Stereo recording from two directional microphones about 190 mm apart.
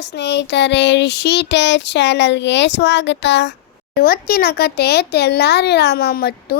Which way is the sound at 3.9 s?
50° left (ahead or behind).